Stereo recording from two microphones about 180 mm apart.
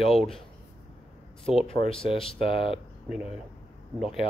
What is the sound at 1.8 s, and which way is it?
Speech, 30° left (ahead or behind).